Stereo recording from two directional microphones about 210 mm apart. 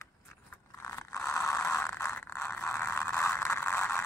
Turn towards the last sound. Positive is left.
turn(degrees=10)  # may be behind; listen again after turning